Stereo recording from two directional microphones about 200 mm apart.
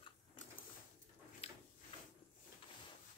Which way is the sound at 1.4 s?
30° left (ahead or behind).